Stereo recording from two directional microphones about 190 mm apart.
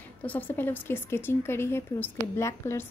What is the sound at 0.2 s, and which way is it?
A woman's voice, 10° left (ahead or behind).